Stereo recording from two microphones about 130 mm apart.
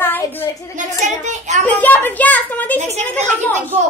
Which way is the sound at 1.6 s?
15° left (ahead or behind).